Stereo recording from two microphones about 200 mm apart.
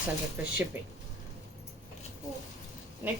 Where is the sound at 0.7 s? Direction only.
10° right (ahead or behind).